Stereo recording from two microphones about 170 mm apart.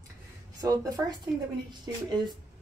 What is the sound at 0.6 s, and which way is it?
A woman's voice, 20° right (ahead or behind).